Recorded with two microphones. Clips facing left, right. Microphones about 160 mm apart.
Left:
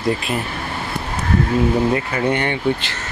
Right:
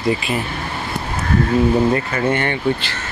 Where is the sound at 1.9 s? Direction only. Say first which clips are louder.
Right 1 dB; 15° left (ahead or behind).